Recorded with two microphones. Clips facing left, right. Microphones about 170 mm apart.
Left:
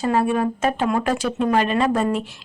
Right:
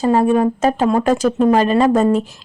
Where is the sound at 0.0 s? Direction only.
35° right (ahead or behind).